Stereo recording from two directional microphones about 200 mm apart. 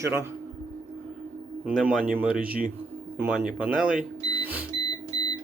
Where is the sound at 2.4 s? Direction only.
45° right (ahead or behind).